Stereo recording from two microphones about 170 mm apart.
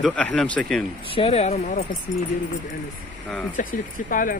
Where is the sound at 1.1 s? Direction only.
35° left (ahead or behind).